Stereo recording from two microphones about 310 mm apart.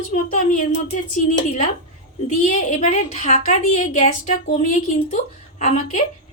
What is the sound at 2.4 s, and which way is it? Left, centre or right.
A woman's voice, left.